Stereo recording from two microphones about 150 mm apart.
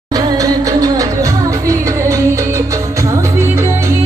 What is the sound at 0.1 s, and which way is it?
Music, 25° right (ahead or behind).